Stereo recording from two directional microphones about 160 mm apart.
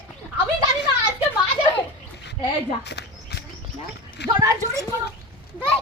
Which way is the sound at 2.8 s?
90° left.